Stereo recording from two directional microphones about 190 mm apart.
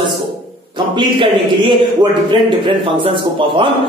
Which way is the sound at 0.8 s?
25° right (ahead or behind).